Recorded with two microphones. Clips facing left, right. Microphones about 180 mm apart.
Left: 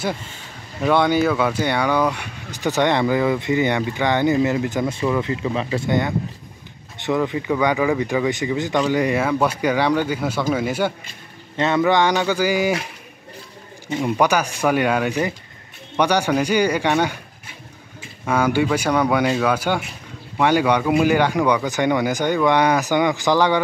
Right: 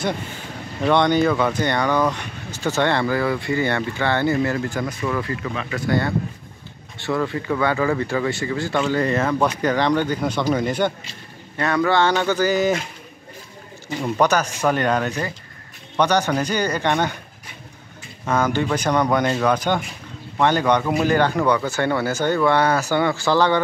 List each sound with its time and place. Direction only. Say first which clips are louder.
0.8 s speech: even; 5° left (ahead or behind)
11.5 s speech: left 2 dB; 20° left (ahead or behind)
14.0 s speech: even; 10° left (ahead or behind)
18.2 s speech: left 2 dB; 10° left (ahead or behind)